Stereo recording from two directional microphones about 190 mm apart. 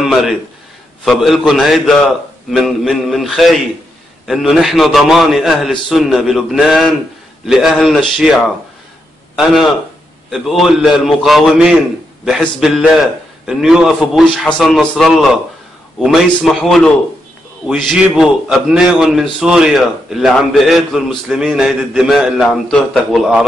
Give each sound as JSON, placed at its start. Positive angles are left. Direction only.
{"t": 0.0, "sound": "a man's voice", "side_deg": 0}